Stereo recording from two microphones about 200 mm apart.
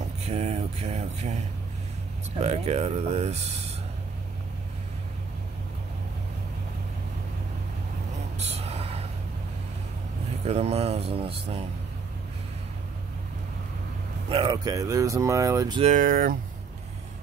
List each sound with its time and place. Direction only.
0.2 s speech: 30° right (ahead or behind)
2.4 s speech: 30° right (ahead or behind)
8.4 s a sound: 30° right (ahead or behind)
10.4 s speech: 30° right (ahead or behind)
14.3 s speech: 25° right (ahead or behind)
15.8 s speech: 40° right (ahead or behind)